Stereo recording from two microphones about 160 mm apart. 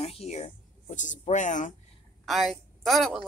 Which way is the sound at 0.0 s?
40° left (ahead or behind).